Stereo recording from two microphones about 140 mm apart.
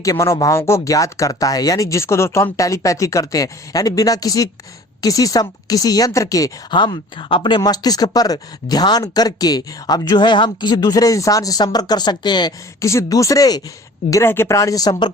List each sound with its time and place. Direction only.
0.0 s speech: 25° left (ahead or behind)